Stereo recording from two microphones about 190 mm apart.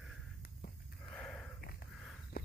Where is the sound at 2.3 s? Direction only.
55° left (ahead or behind).